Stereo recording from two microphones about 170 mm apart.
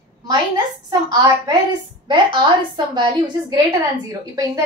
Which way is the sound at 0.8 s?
20° right (ahead or behind).